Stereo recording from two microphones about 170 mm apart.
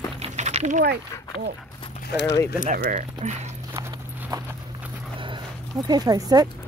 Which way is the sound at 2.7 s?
50° right (ahead or behind).